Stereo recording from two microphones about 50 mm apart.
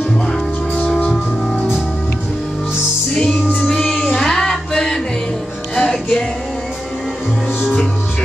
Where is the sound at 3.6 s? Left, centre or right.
Centre.